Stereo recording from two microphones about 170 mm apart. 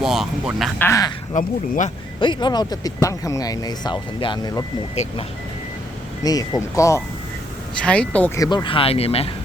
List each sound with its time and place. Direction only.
0.0 s speech: centre (ahead or behind)
0.8 s speech: 20° left (ahead or behind)
1.3 s speech: 45° left (ahead or behind)
2.2 s speech: 25° left (ahead or behind)
6.2 s speech: 20° left (ahead or behind)
7.8 s speech: 5° left (ahead or behind)
8.4 s speech: 25° left (ahead or behind)